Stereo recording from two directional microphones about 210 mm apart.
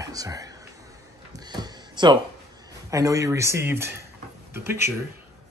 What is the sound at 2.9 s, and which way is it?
Speech, 15° right (ahead or behind).